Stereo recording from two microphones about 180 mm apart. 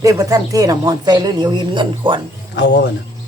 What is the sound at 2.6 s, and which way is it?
Speech, 75° left (ahead or behind).